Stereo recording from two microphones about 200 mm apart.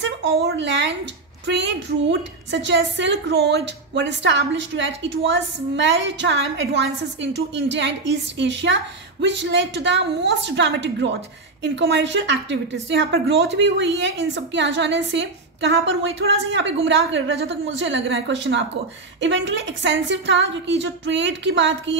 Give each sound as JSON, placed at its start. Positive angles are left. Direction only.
{"t": 0.0, "sound": "a woman's voice", "side_deg": -65}